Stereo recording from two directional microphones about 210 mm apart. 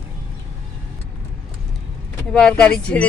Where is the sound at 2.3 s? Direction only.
5° left (ahead or behind).